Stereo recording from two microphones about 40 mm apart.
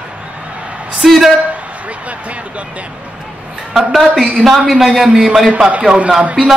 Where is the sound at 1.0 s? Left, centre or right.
Centre.